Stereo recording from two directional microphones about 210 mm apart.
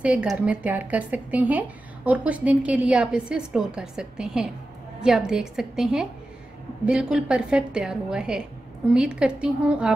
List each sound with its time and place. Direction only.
0.0 s a woman's voice: 5° right (ahead or behind)